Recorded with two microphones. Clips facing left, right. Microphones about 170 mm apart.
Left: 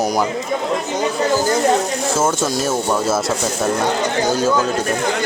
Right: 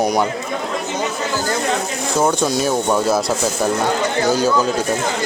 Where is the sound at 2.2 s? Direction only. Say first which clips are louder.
Right 4 dB; centre (ahead or behind).